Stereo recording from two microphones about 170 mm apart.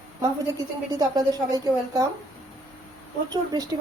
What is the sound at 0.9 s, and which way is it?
A woman's voice, 20° right (ahead or behind).